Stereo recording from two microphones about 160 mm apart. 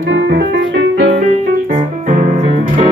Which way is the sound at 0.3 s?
90° right.